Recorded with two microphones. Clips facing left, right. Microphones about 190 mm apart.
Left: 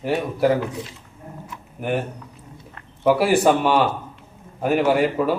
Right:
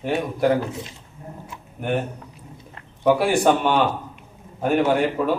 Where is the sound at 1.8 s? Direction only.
5° left (ahead or behind).